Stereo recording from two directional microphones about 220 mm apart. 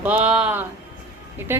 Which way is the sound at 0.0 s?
5° right (ahead or behind).